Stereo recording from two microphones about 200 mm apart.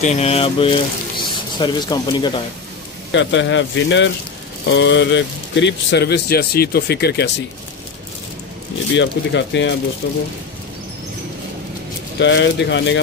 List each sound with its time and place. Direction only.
0.0 s speech: 30° left (ahead or behind)
3.1 s speech: 65° left (ahead or behind)
8.9 s speech: 65° left (ahead or behind)
12.2 s speech: 65° left (ahead or behind)